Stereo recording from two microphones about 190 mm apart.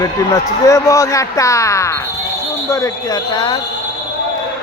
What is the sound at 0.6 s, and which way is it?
Speech, 15° left (ahead or behind).